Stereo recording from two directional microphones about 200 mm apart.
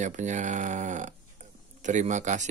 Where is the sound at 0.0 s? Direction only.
35° right (ahead or behind).